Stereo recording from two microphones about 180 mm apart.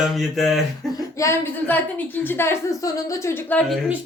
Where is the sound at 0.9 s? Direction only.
15° left (ahead or behind).